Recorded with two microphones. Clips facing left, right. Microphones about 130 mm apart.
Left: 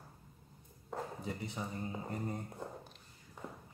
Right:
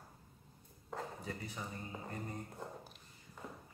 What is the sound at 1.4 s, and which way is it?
Speech, 20° left (ahead or behind).